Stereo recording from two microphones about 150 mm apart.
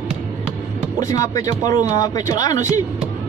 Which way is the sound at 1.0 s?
20° left (ahead or behind).